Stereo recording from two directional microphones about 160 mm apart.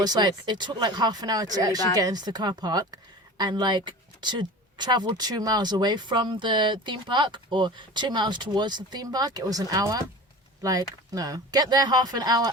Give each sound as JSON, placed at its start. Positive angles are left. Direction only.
{"t": 0.0, "sound": "speech", "side_deg": -25}